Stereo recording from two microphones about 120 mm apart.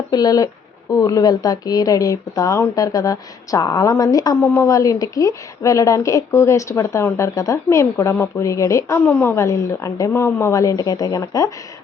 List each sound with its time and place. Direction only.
0.1 s a woman's voice: 35° left (ahead or behind)
4.4 s a woman's voice: 20° left (ahead or behind)